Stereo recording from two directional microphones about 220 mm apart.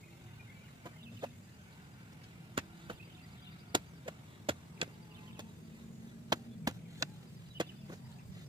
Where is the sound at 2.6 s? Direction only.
25° right (ahead or behind).